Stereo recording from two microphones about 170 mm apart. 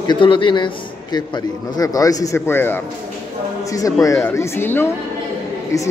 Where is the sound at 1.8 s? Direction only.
20° left (ahead or behind).